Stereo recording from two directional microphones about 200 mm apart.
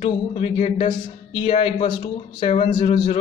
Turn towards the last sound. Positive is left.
turn(degrees=30)  # may be behind; listen again after turning